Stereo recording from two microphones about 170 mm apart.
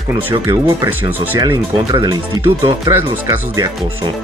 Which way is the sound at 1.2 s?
20° right (ahead or behind).